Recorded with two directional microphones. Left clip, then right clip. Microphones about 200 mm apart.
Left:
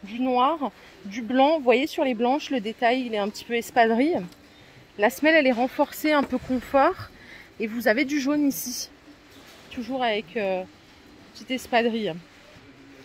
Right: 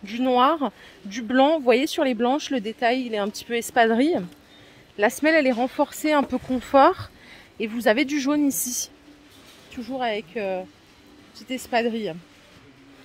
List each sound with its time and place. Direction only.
0.1 s speech: 30° right (ahead or behind); by 8.5 s 15° right (ahead or behind)
9.8 s speech: 5° right (ahead or behind)